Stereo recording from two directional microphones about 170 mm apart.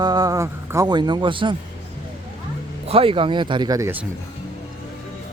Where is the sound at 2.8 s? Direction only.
35° right (ahead or behind).